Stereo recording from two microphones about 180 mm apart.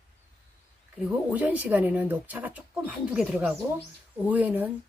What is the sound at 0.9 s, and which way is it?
Speech, 5° right (ahead or behind).